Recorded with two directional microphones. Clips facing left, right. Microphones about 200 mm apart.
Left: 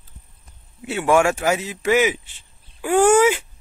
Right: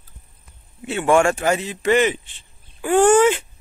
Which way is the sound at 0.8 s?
5° left (ahead or behind).